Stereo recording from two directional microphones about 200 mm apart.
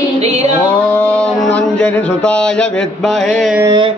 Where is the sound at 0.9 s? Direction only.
5° left (ahead or behind).